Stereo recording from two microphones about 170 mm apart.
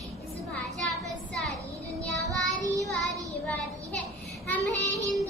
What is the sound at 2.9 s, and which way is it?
Child singing, centre (ahead or behind).